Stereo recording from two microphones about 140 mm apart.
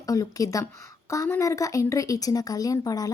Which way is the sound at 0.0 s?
25° left (ahead or behind).